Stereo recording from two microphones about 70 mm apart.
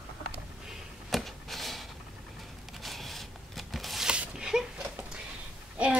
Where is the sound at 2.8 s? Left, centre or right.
Centre.